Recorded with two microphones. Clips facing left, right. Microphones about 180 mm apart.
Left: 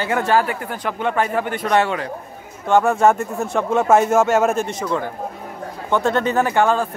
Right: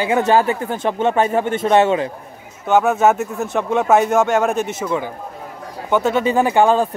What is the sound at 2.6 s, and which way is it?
Speech, 5° right (ahead or behind).